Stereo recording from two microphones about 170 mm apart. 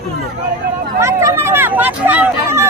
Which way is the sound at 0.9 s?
15° right (ahead or behind).